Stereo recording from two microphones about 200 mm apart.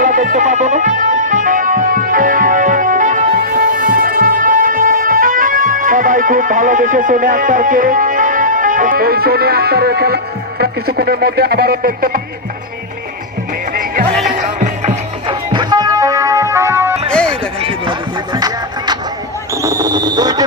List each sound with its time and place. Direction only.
0.0 s music: 40° right (ahead or behind)
10.6 s speech: 50° right (ahead or behind)
14.3 s music: 40° right (ahead or behind)
15.5 s music: 20° right (ahead or behind)
17.6 s a sound: 25° right (ahead or behind)
18.3 s music: 20° right (ahead or behind)
19.6 s a sound: 15° right (ahead or behind)